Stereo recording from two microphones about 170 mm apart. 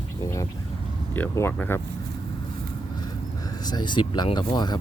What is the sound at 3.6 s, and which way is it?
Speech, 25° left (ahead or behind).